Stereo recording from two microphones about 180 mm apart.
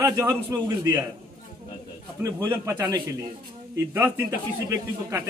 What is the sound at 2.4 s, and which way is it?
Speech, 15° right (ahead or behind).